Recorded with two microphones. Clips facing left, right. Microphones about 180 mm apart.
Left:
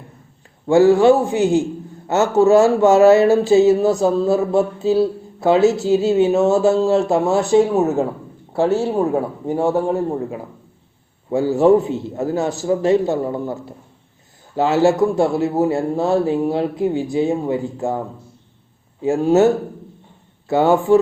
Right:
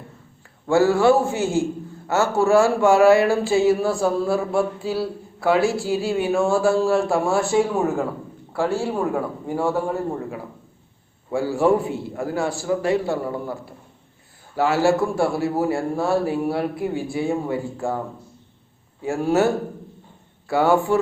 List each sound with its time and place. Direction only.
0.7 s a man's voice: 20° left (ahead or behind)
19.0 s speech: 20° left (ahead or behind)